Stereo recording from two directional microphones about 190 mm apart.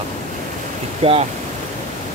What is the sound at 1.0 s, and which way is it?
Speech, 30° right (ahead or behind).